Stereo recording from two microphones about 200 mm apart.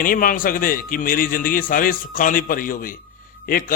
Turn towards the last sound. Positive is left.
turn(degrees=45)  # may be behind; listen again after turning